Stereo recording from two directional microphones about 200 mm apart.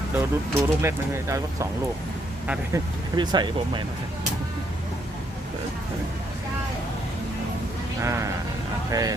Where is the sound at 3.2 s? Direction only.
20° right (ahead or behind).